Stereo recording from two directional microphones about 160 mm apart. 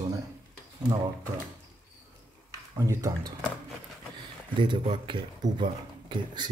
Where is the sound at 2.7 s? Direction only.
20° right (ahead or behind).